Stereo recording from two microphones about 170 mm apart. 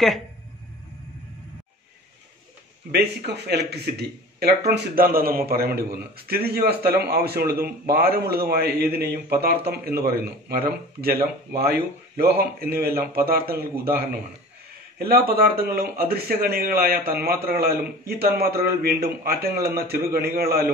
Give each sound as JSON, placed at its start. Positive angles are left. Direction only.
{"t": 2.9, "sound": "speech", "side_deg": -75}